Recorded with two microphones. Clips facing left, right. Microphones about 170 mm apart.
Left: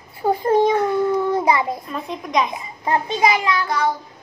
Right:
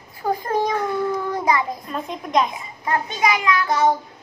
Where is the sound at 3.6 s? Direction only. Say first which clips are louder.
Right 3 dB; 20° right (ahead or behind).